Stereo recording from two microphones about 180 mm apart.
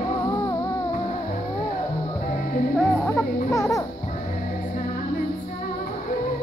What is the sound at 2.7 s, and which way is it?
Speech, 10° left (ahead or behind).